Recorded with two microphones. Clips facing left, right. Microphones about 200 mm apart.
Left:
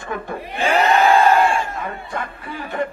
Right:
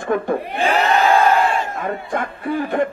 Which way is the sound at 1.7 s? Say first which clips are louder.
Right 5 dB; 50° right (ahead or behind).